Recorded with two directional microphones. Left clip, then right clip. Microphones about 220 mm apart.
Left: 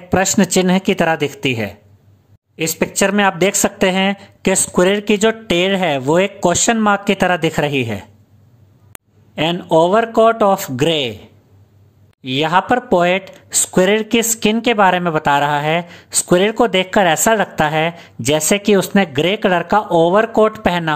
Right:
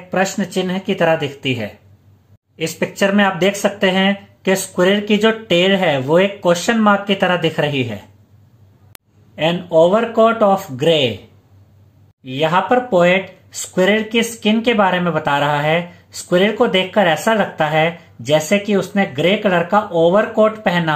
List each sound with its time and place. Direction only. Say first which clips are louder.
0.1 s speech: left 4 dB; 45° left (ahead or behind)
8.9 s a sound: left 4 dB; 5° left (ahead or behind)
9.3 s speech: left 1 dB; 40° left (ahead or behind)
12.2 s speech: left 1 dB; 45° left (ahead or behind)